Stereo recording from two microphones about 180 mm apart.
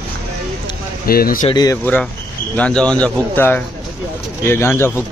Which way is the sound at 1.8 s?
10° left (ahead or behind).